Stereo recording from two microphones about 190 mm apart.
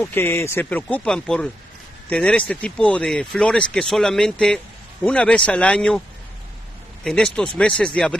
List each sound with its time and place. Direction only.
0.0 s speech: 10° left (ahead or behind)
7.1 s speech: 5° left (ahead or behind)